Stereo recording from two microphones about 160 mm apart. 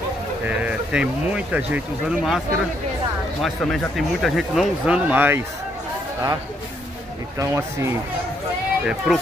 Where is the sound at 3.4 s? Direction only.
Centre (ahead or behind).